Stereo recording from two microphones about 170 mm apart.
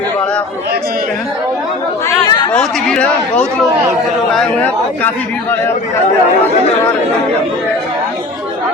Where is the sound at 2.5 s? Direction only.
5° left (ahead or behind).